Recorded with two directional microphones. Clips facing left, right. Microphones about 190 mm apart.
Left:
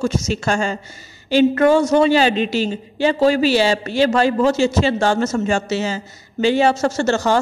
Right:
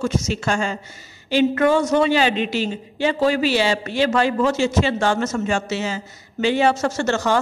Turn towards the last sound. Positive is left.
turn(degrees=35)  # may be behind; listen again after turning